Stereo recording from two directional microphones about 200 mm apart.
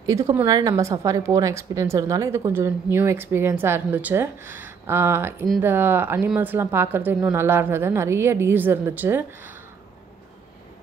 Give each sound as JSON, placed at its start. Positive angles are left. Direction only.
{"t": 0.0, "sound": "a woman's voice", "side_deg": -15}